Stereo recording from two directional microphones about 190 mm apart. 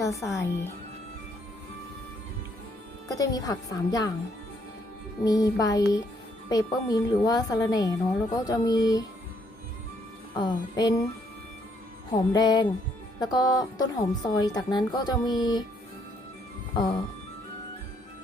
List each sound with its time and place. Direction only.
0.0 s speech: 15° left (ahead or behind)
3.2 s a woman's voice: 20° left (ahead or behind)
5.2 s a woman's voice: 20° left (ahead or behind)
10.3 s a woman's voice: 20° left (ahead or behind)
12.1 s a woman's voice: 20° left (ahead or behind)